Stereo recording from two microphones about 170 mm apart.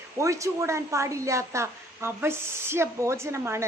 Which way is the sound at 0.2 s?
20° right (ahead or behind).